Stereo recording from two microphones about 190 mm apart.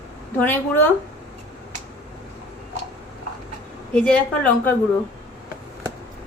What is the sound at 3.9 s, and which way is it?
Speech, 5° left (ahead or behind).